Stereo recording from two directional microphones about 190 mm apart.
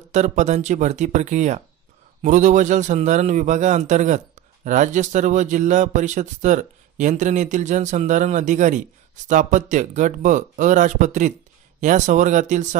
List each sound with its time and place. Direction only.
0.1 s a man's voice: 40° right (ahead or behind)